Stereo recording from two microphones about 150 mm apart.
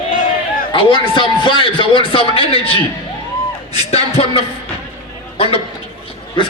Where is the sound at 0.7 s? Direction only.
35° left (ahead or behind).